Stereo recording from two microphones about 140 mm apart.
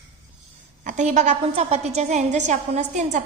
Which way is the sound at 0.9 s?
60° right (ahead or behind).